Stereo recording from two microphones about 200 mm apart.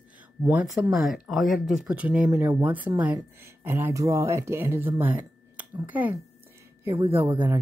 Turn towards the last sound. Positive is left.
turn(degrees=-15)  # may be behind; listen again after turning